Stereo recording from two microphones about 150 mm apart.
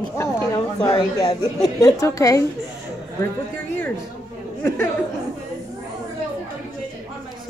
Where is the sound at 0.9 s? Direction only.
30° left (ahead or behind).